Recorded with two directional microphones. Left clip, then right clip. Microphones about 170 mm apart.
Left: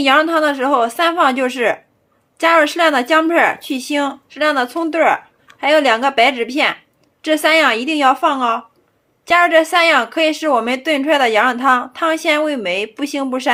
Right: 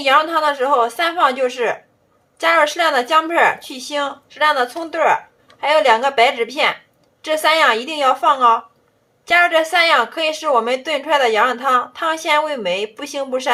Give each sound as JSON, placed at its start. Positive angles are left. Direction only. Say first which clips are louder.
{"t": 0.0, "sound": "speech", "louder": "left 2 dB", "side_deg": 25}